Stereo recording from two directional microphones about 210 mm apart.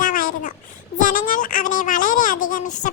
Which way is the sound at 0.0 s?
40° left (ahead or behind).